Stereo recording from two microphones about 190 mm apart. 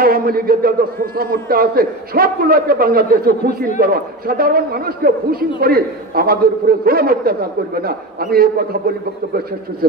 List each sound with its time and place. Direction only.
0.0 s a man's voice: 50° right (ahead or behind)